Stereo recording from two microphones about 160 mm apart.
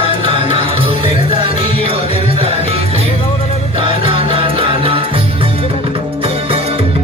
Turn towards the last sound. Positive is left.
turn(degrees=-35)  # may be behind; listen again after turning